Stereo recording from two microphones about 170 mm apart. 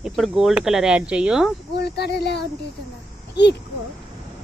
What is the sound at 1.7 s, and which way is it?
Speech, 75° left (ahead or behind).